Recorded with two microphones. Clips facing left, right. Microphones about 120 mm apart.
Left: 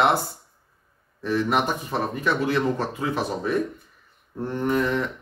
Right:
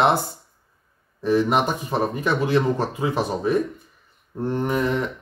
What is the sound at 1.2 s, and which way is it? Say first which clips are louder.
Speech: right 3 dB; 15° right (ahead or behind).